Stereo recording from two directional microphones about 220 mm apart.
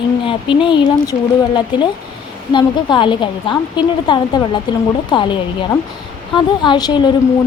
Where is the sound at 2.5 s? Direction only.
20° left (ahead or behind).